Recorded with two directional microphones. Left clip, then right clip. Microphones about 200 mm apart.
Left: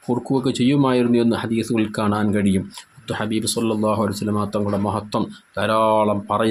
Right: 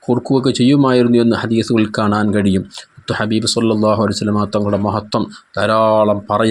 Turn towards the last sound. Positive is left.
turn(degrees=-25)  # may be behind; listen again after turning